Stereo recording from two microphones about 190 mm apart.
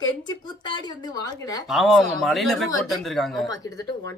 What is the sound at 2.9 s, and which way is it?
Speech, centre (ahead or behind).